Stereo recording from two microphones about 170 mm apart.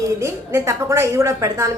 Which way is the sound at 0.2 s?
15° right (ahead or behind).